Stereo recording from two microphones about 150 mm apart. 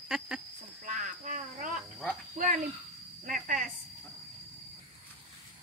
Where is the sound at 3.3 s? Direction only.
60° right (ahead or behind).